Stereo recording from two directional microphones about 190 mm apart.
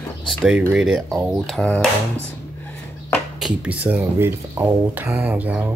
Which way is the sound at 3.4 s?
5° right (ahead or behind).